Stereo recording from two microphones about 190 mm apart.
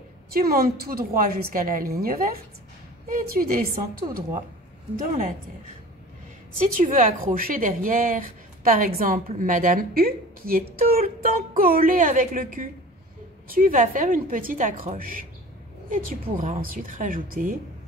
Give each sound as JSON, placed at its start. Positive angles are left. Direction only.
{"t": 0.3, "sound": "speech", "side_deg": -50}
{"t": 6.8, "sound": "speech", "side_deg": -45}